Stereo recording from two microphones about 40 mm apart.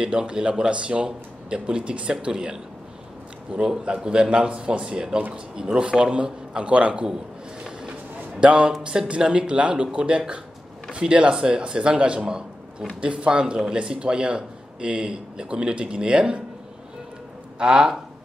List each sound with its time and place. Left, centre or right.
0.0 s a man's voice: right
8.4 s a man's voice: right
17.6 s a man's voice: right